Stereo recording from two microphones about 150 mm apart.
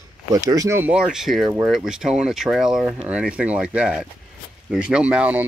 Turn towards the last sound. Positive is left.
turn(degrees=-10)  # may be behind; listen again after turning